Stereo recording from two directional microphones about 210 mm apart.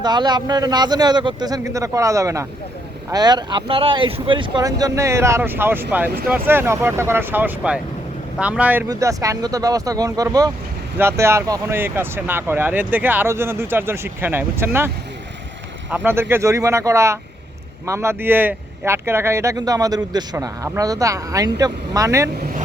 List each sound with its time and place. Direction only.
0.0 s speech: 20° right (ahead or behind)
15.9 s speech: 10° right (ahead or behind)